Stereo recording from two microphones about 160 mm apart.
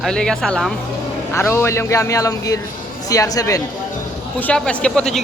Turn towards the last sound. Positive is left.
turn(degrees=5)  # may be behind; listen again after turning